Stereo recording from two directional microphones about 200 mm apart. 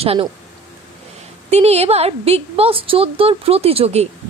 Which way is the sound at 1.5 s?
30° right (ahead or behind).